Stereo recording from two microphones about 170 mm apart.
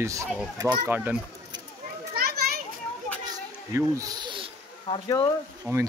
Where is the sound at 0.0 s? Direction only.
15° right (ahead or behind).